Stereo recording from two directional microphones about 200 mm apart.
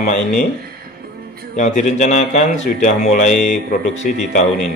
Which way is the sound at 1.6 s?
35° left (ahead or behind).